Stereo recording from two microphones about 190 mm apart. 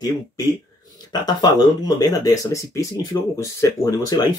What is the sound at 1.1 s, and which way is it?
Speech, 20° left (ahead or behind).